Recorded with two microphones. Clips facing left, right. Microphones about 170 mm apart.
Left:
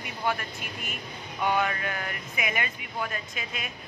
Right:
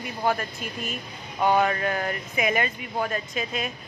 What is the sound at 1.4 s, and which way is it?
A woman's voice, 40° right (ahead or behind).